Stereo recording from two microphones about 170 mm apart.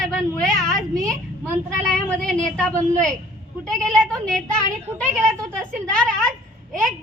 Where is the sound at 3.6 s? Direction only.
5° left (ahead or behind).